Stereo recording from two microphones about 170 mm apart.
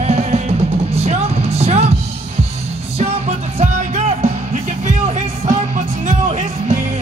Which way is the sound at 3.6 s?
40° right (ahead or behind).